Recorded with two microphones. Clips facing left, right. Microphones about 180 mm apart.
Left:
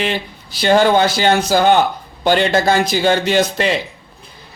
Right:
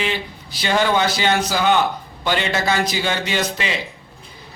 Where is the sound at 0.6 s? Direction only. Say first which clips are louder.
Left 6 dB; 40° left (ahead or behind).